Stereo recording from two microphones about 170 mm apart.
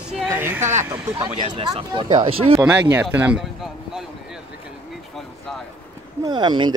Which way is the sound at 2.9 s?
10° right (ahead or behind).